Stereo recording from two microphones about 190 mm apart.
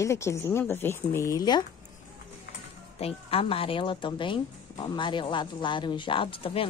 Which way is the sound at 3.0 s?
30° left (ahead or behind).